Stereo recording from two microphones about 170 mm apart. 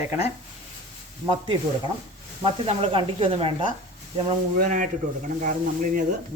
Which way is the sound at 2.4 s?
35° right (ahead or behind).